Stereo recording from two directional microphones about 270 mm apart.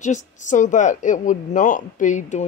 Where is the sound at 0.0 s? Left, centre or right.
Left.